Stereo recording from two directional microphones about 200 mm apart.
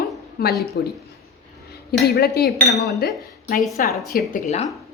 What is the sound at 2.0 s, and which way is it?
Speech, 50° left (ahead or behind).